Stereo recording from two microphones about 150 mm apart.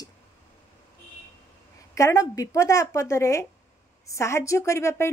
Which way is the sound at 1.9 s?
20° left (ahead or behind).